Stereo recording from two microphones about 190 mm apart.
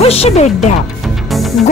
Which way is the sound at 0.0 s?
30° left (ahead or behind).